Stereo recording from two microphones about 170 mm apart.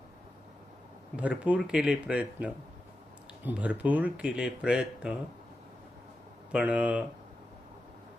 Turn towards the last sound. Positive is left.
turn(degrees=-10)  # may be behind; listen again after turning